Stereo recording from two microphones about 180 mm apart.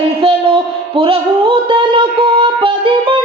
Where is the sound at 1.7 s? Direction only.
30° right (ahead or behind).